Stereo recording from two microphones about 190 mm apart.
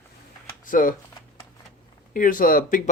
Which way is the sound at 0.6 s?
45° left (ahead or behind).